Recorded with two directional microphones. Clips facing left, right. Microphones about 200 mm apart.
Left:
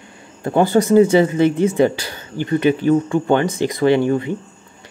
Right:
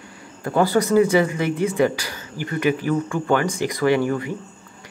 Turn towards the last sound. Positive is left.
turn(degrees=25)  # may be behind; listen again after turning